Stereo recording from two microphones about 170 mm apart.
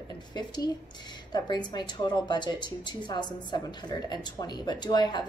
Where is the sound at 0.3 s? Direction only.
25° left (ahead or behind).